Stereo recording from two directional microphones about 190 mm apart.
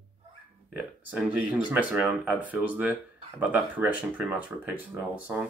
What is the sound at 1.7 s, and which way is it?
Speech, 5° right (ahead or behind).